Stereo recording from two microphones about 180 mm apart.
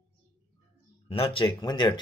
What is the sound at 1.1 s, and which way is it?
Speech, 30° left (ahead or behind).